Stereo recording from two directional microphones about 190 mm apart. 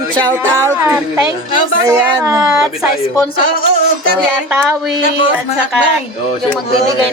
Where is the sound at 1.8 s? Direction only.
20° right (ahead or behind).